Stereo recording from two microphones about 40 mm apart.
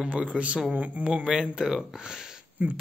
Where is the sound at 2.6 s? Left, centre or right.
Right.